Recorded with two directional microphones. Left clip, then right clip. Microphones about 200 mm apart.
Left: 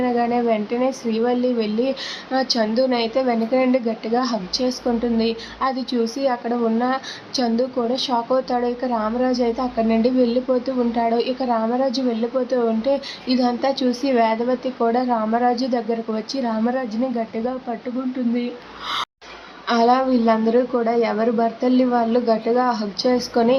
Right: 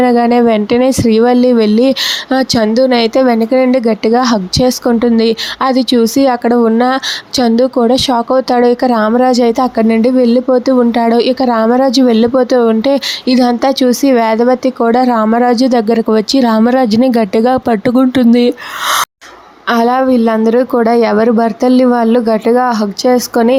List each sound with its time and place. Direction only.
0.0 s speech: 45° right (ahead or behind)
19.6 s speech: 45° right (ahead or behind)